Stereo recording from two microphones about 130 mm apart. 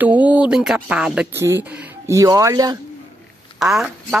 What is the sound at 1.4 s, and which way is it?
Speech, 20° right (ahead or behind).